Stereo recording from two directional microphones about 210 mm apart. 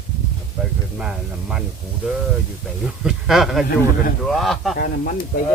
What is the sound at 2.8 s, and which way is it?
Speech, 5° right (ahead or behind).